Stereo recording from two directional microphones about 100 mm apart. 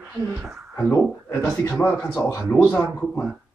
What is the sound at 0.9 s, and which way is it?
Speech, 25° left (ahead or behind).